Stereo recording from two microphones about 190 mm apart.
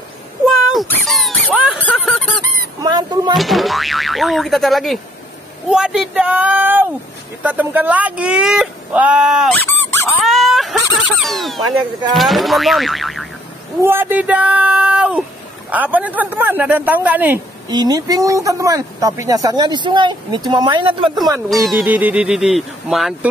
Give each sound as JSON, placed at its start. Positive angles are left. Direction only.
{"t": 0.8, "sound": "a sound", "side_deg": 0}
{"t": 1.8, "sound": "goose", "side_deg": 5}
{"t": 2.8, "sound": "speech", "side_deg": -20}
{"t": 3.3, "sound": "speech", "side_deg": 0}
{"t": 10.2, "sound": "dog", "side_deg": 0}
{"t": 11.2, "sound": "speech", "side_deg": 0}
{"t": 13.7, "sound": "speech", "side_deg": -10}
{"t": 17.6, "sound": "speech", "side_deg": -20}
{"t": 21.5, "sound": "speech", "side_deg": 0}